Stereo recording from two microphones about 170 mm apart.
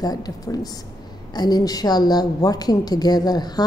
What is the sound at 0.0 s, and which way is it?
A woman's voice, 25° left (ahead or behind).